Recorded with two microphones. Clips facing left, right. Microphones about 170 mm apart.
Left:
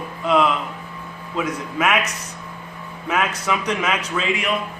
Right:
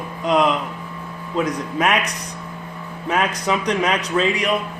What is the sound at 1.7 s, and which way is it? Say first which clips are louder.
Speech: even; 35° right (ahead or behind).